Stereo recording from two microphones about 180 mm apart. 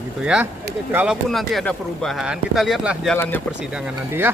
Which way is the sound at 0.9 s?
10° right (ahead or behind).